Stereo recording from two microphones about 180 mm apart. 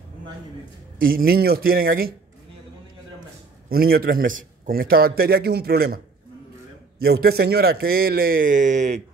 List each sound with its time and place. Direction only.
0.9 s a man's voice: 55° right (ahead or behind)
3.6 s a man's voice: 60° right (ahead or behind)
7.0 s a man's voice: 60° right (ahead or behind); by 9.0 s 40° right (ahead or behind)